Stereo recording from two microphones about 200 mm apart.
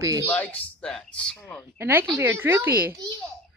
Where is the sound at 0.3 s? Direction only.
5° left (ahead or behind).